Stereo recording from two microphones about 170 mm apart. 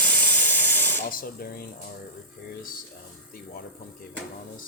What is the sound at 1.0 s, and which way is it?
Speech, 60° left (ahead or behind).